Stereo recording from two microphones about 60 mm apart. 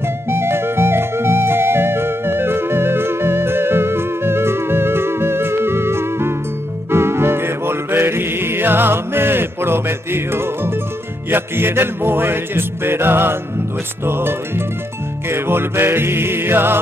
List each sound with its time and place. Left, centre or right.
0.4 s music: right